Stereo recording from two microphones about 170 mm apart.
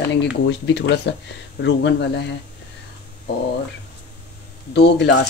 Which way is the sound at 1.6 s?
90° left.